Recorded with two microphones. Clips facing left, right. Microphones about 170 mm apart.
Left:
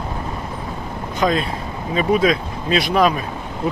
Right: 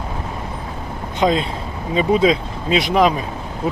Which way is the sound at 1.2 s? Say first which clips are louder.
Right 2 dB; 20° right (ahead or behind).